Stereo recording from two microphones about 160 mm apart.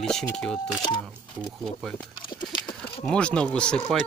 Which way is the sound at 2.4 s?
30° left (ahead or behind).